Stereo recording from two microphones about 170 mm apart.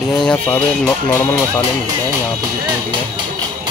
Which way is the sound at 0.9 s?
20° left (ahead or behind).